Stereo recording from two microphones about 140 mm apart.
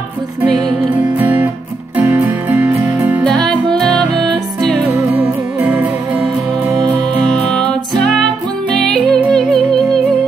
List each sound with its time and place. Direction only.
0.5 s music: centre (ahead or behind)
1.1 s music: 10° right (ahead or behind)
3.3 s music: 5° left (ahead or behind)
4.2 s music: 30° right (ahead or behind)
4.9 s music: 10° right (ahead or behind)
7.3 s music: 5° left (ahead or behind)
8.7 s music: 5° left (ahead or behind)